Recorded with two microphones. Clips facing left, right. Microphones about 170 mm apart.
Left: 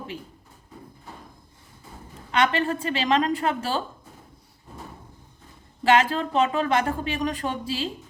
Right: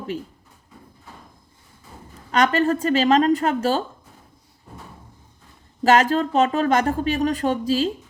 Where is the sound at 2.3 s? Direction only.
40° right (ahead or behind).